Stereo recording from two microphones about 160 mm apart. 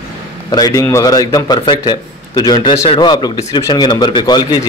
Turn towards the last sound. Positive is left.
turn(degrees=25)  # may be behind; listen again after turning